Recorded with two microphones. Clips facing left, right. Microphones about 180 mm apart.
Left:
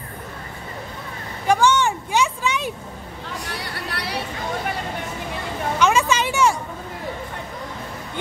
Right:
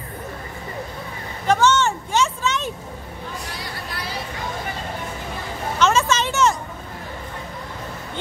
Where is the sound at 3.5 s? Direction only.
65° left (ahead or behind).